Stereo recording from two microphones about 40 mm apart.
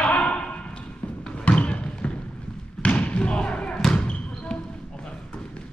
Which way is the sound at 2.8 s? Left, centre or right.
Left.